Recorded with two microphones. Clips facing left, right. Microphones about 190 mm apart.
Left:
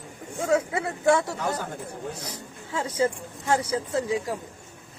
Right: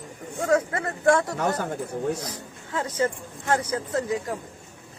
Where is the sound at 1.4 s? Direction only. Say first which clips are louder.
Right 3 dB; 65° right (ahead or behind).